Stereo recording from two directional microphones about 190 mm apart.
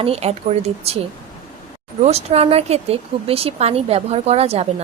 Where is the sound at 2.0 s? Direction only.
35° right (ahead or behind).